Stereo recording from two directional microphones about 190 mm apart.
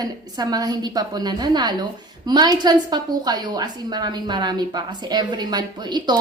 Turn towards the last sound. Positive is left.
turn(degrees=-25)  # may be behind; listen again after turning